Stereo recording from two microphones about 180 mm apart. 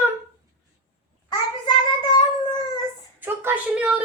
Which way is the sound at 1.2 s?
25° left (ahead or behind).